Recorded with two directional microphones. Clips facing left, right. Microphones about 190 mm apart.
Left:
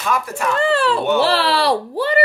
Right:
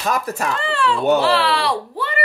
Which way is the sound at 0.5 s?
40° left (ahead or behind).